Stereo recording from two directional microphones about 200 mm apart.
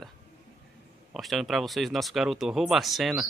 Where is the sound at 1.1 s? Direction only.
Centre (ahead or behind).